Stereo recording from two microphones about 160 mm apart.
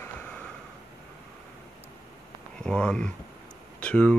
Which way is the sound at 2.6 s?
5° left (ahead or behind).